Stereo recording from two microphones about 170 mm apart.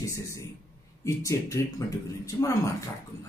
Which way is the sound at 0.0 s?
15° left (ahead or behind).